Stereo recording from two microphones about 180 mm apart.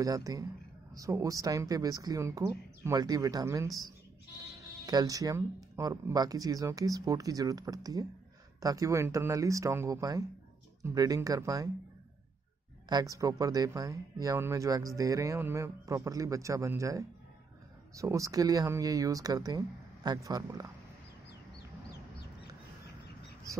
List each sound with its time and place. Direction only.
0.0 s speech: 20° right (ahead or behind)
12.8 s speech: 20° right (ahead or behind)